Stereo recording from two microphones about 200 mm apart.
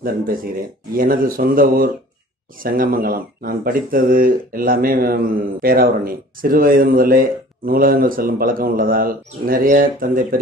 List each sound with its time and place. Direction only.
0.0 s speech: 45° right (ahead or behind)